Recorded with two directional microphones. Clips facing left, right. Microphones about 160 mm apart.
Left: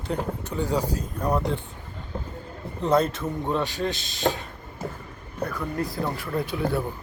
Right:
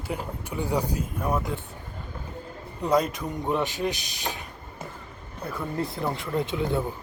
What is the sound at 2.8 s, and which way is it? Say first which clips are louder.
Speech: left 2 dB; 10° right (ahead or behind).